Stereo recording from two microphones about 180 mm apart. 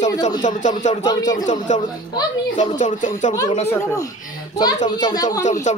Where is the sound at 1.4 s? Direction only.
45° left (ahead or behind).